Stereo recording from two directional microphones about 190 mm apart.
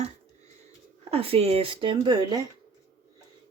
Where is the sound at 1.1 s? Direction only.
30° right (ahead or behind).